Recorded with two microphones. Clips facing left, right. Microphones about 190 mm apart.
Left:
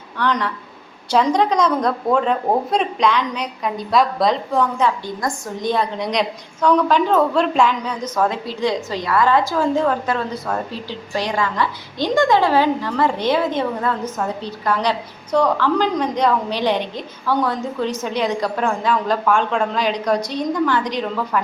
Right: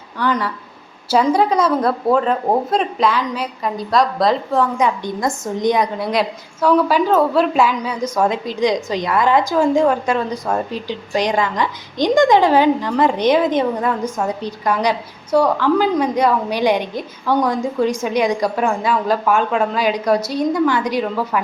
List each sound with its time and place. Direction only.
0.2 s a woman's voice: 10° right (ahead or behind)
4.8 s a woman's voice: 20° right (ahead or behind)
6.0 s a woman's voice: 5° right (ahead or behind)